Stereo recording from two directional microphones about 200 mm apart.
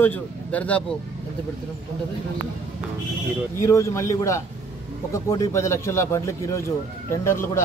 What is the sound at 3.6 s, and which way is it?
A man's voice, 15° left (ahead or behind).